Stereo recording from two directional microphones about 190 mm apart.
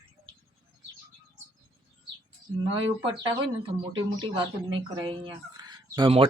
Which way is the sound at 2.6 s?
25° right (ahead or behind).